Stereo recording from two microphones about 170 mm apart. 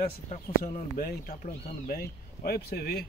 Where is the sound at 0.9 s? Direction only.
60° left (ahead or behind).